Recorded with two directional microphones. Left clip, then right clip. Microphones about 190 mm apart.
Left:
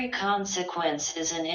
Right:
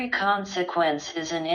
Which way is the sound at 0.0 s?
35° right (ahead or behind).